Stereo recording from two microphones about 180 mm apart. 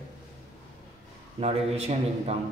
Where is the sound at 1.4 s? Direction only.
35° right (ahead or behind).